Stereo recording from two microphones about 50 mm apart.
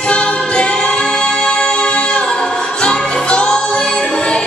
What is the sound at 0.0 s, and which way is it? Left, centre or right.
Music, centre.